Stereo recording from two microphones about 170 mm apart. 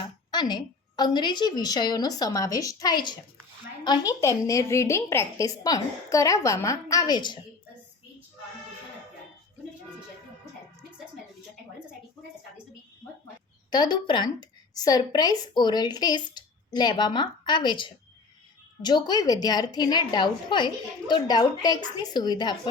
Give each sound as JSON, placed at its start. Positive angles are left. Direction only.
{"t": 0.0, "sound": "a woman's voice", "side_deg": 25}
{"t": 13.7, "sound": "a woman's voice", "side_deg": 25}